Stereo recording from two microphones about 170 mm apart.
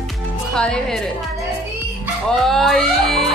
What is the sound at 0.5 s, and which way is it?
Speech, 5° left (ahead or behind).